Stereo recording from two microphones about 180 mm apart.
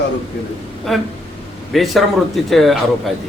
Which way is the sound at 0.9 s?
Centre (ahead or behind).